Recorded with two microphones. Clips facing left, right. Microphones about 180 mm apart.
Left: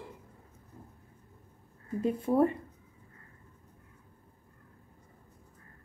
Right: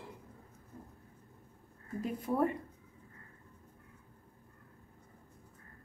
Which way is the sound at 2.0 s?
25° left (ahead or behind).